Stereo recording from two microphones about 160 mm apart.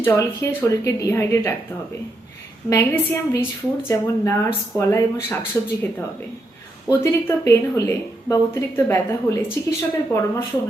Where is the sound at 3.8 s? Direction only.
15° left (ahead or behind).